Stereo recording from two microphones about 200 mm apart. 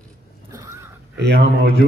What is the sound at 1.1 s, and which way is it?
Speech, 60° right (ahead or behind).